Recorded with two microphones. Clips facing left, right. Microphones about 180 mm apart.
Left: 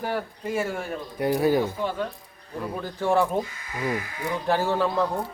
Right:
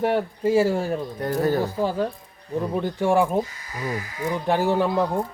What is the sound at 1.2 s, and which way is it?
Speech, 10° left (ahead or behind).